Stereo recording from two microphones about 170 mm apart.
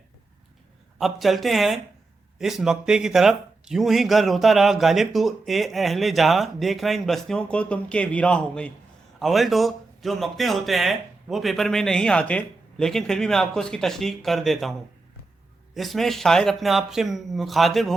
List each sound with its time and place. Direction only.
0.9 s a man's voice: centre (ahead or behind)